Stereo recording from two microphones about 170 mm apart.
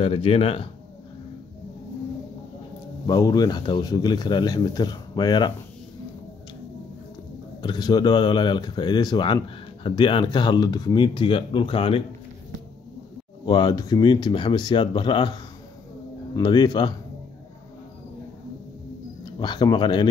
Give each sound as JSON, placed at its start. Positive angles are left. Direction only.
{"t": 0.0, "sound": "speech", "side_deg": 35}
{"t": 3.1, "sound": "speech", "side_deg": 20}
{"t": 7.6, "sound": "speech", "side_deg": 25}
{"t": 13.5, "sound": "speech", "side_deg": 25}
{"t": 16.3, "sound": "speech", "side_deg": 25}
{"t": 19.2, "sound": "speech", "side_deg": 25}